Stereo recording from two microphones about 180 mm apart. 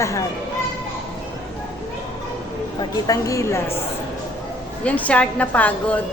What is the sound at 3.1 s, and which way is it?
Speech, 15° left (ahead or behind).